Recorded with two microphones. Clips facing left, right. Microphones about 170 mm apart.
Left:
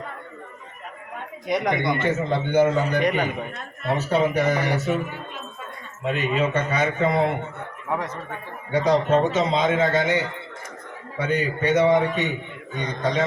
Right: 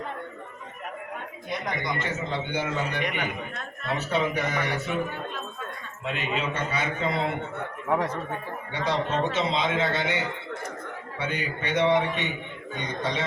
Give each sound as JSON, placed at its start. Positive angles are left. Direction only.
{"t": 1.5, "sound": "a man's voice", "side_deg": 80}
{"t": 6.1, "sound": "a man's voice", "side_deg": 45}
{"t": 8.7, "sound": "a man's voice", "side_deg": 45}
{"t": 11.2, "sound": "a man's voice", "side_deg": 40}